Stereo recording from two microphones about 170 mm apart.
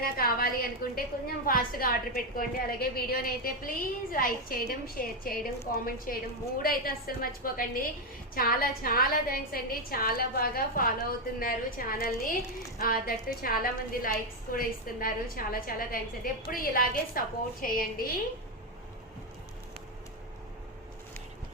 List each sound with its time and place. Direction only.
0.0 s a woman's voice: 60° left (ahead or behind)